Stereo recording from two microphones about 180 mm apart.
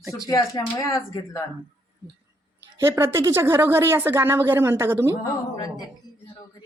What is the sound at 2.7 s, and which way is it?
Speech, 15° right (ahead or behind).